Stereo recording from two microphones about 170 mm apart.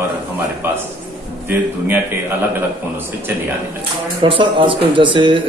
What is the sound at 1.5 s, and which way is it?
Speech, 10° right (ahead or behind).